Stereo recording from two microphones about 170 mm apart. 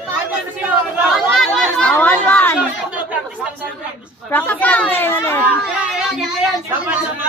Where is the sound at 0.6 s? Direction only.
Centre (ahead or behind).